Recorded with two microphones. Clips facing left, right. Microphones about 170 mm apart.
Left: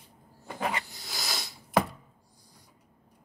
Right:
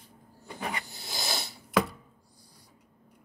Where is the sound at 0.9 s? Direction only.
25° right (ahead or behind).